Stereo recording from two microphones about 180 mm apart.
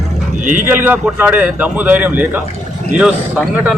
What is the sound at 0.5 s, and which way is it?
Speech, 10° right (ahead or behind).